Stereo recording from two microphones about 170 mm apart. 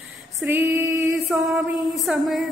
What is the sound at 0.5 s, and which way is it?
Female singing, 15° right (ahead or behind).